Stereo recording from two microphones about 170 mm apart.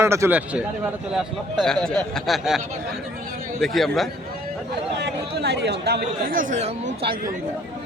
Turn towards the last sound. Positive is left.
turn(degrees=-45)  # may be behind; listen again after turning